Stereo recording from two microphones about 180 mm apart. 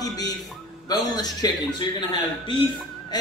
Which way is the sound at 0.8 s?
20° left (ahead or behind).